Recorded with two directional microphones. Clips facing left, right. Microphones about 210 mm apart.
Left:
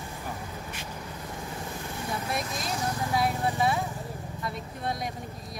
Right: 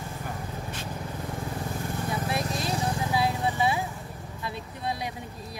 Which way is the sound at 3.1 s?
5° right (ahead or behind).